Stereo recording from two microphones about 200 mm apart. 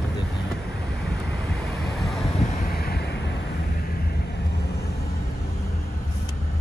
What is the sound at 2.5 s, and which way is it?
Wind, 50° left (ahead or behind).